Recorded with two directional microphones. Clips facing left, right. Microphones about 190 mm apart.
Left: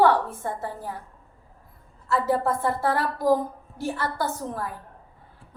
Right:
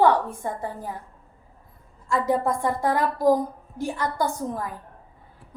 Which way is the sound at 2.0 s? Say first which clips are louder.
Right 1 dB; 15° right (ahead or behind).